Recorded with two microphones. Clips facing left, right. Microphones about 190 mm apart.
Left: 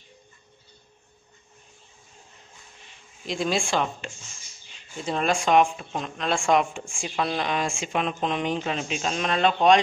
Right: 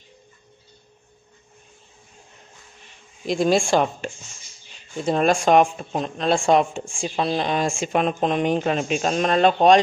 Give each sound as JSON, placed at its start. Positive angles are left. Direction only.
{"t": 3.3, "sound": "speech", "side_deg": -45}